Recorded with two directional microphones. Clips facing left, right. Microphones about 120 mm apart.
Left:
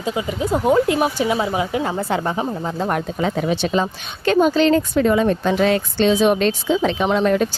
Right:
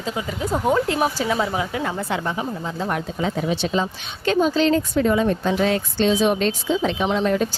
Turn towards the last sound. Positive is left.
turn(degrees=65)  # may be behind; listen again after turning